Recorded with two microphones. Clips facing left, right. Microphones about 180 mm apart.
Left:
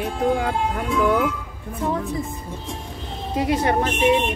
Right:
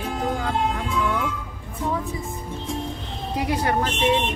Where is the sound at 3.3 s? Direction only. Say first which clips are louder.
Left 3 dB; 25° left (ahead or behind).